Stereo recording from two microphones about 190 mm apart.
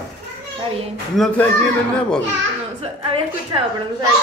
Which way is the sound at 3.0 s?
25° right (ahead or behind).